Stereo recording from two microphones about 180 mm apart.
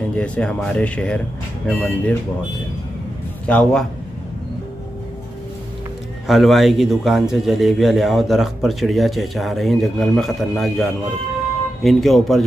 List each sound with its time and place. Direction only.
0.1 s speech: 5° left (ahead or behind)
3.4 s speech: 5° left (ahead or behind)
6.2 s a man's voice: centre (ahead or behind)